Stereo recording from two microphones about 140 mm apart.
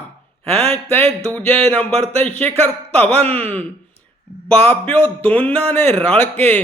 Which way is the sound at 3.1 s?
45° right (ahead or behind).